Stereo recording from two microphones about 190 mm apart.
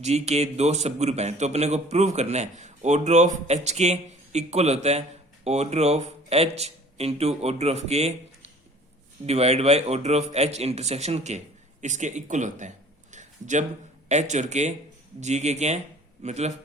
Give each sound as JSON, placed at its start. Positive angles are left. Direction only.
{"t": 0.0, "sound": "a man's voice", "side_deg": -35}